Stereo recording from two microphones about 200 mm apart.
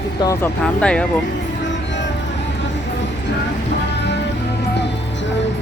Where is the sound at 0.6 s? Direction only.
5° left (ahead or behind).